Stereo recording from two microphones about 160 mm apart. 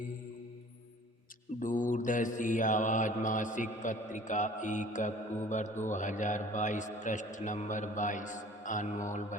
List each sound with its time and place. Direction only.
1.5 s mantra: 55° left (ahead or behind)